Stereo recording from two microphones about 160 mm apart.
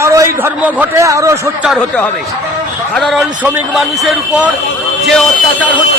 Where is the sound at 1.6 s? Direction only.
Centre (ahead or behind).